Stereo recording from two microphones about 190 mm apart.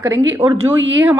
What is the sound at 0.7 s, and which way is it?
Speech, 75° right (ahead or behind).